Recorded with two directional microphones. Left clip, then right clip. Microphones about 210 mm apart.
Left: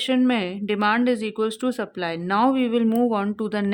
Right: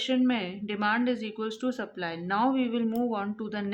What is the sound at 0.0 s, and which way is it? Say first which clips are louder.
Speech: left 6 dB; 55° left (ahead or behind).